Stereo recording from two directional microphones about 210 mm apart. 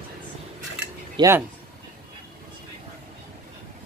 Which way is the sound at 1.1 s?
15° right (ahead or behind).